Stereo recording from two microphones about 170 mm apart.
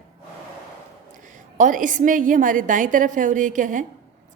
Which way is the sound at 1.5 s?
50° right (ahead or behind).